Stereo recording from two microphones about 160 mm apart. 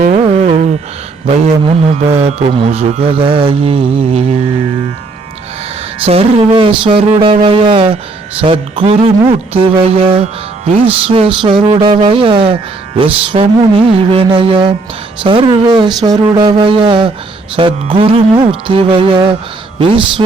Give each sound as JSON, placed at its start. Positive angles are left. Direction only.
{"t": 0.0, "sound": "music", "side_deg": -45}
{"t": 1.3, "sound": "mantra", "side_deg": -35}
{"t": 6.1, "sound": "mantra", "side_deg": -35}
{"t": 15.2, "sound": "a sound", "side_deg": -35}
{"t": 17.6, "sound": "mantra", "side_deg": -30}